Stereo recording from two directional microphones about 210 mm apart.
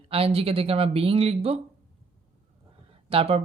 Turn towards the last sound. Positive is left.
turn(degrees=-30)  # may be behind; listen again after turning